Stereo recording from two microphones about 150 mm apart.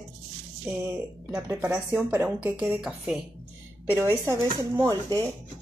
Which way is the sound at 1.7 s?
10° right (ahead or behind).